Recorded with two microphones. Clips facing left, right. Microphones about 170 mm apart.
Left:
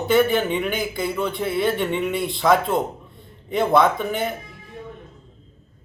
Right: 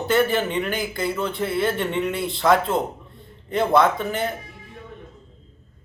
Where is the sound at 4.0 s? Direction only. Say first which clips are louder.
Left 1 dB; 15° left (ahead or behind).